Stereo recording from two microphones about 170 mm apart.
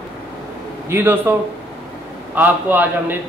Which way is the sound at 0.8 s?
15° right (ahead or behind).